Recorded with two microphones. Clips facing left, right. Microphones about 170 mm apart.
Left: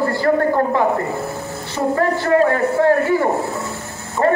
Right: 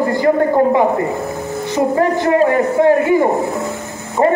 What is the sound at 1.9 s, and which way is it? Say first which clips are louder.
A man's voice: even; 15° right (ahead or behind).